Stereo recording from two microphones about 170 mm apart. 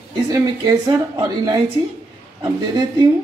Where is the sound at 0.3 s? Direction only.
20° right (ahead or behind).